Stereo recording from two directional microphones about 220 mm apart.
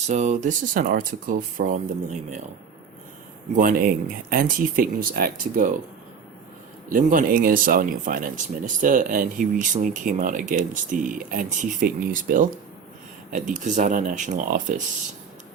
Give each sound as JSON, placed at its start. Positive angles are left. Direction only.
{"t": 0.1, "sound": "speech", "side_deg": -30}
{"t": 3.5, "sound": "speech", "side_deg": -40}
{"t": 6.9, "sound": "speech", "side_deg": -40}